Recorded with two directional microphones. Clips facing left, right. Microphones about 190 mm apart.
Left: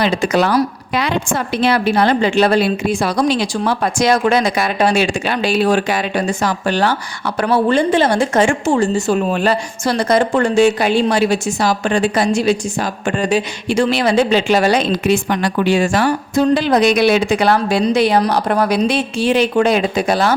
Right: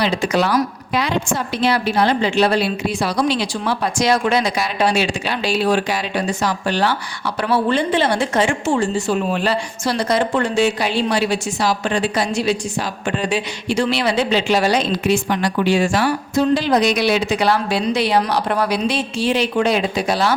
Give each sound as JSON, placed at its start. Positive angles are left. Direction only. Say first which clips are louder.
{"t": 0.0, "sound": "a woman's voice", "louder": "left 3 dB", "side_deg": 50}
{"t": 0.9, "sound": "a woman's voice", "louder": "left 2 dB", "side_deg": 60}